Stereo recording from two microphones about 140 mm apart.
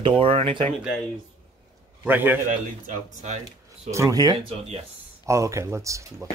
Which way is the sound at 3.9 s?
25° right (ahead or behind).